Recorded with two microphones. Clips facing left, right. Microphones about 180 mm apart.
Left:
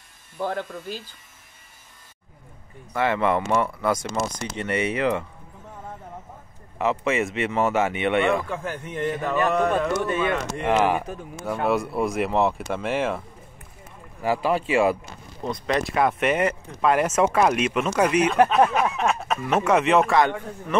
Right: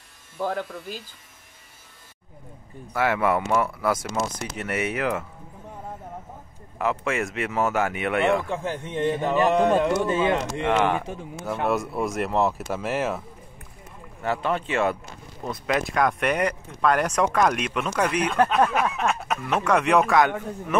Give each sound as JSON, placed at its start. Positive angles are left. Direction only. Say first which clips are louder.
{"t": 0.4, "sound": "speech", "louder": "even", "side_deg": -5}
{"t": 2.9, "sound": "speech", "louder": "even", "side_deg": -5}
{"t": 6.8, "sound": "speech", "louder": "left 2 dB", "side_deg": 0}
{"t": 8.5, "sound": "speech", "louder": "right 2 dB", "side_deg": -25}
{"t": 10.6, "sound": "speech", "louder": "left 4 dB", "side_deg": 5}
{"t": 14.2, "sound": "speech", "louder": "left 3 dB", "side_deg": 5}
{"t": 15.4, "sound": "speech", "louder": "left 1 dB", "side_deg": -5}